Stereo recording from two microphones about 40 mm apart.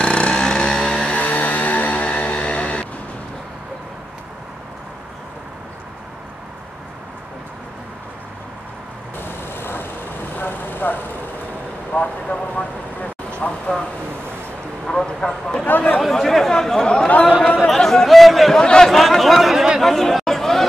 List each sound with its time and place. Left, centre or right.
0.0 s vehicle: left
1.1 s vehicle: left
2.0 s vehicle: left
9.2 s vehicle: left
11.9 s vehicle: left
13.4 s a sound: left
15.1 s a sound: centre
16.0 s chatter: centre
17.1 s chatter: left
17.6 s chatter: centre
18.6 s a sound: centre
18.9 s a sound: centre
19.5 s chatter: centre
19.8 s chatter: centre